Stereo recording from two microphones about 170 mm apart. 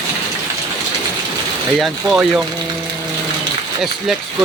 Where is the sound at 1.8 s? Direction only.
5° right (ahead or behind).